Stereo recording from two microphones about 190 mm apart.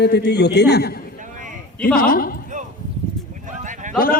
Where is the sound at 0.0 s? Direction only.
65° left (ahead or behind).